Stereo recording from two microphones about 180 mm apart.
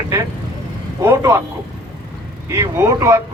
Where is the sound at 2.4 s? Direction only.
15° right (ahead or behind).